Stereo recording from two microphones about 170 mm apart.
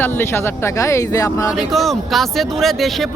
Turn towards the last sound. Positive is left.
turn(degrees=0)  # may be behind; listen again after turning